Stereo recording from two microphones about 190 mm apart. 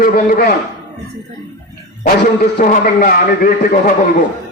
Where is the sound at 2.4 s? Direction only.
45° left (ahead or behind).